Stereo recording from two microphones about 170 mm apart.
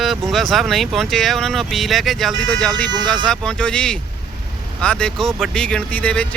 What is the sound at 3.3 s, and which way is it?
Speech, 5° left (ahead or behind).